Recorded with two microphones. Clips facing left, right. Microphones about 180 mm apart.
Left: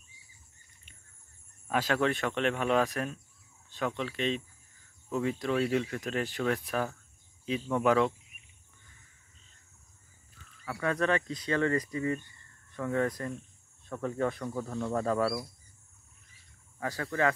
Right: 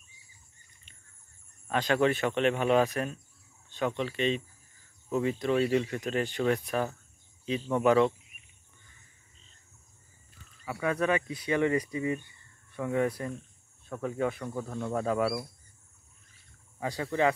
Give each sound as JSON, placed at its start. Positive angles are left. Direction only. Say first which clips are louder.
{"t": 1.7, "sound": "speech", "louder": "right 2 dB", "side_deg": 5}
{"t": 10.6, "sound": "speech", "louder": "right 1 dB", "side_deg": -10}
{"t": 16.8, "sound": "speech", "louder": "right 2 dB", "side_deg": -15}